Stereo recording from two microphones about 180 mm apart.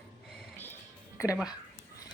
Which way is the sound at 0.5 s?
10° left (ahead or behind).